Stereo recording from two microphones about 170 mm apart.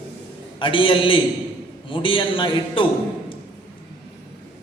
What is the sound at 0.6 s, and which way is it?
A man's voice, 30° left (ahead or behind).